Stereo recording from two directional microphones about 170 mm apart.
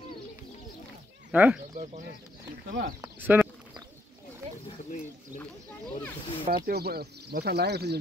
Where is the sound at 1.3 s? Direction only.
10° right (ahead or behind).